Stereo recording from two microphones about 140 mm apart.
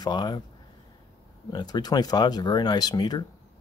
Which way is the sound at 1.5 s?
30° left (ahead or behind).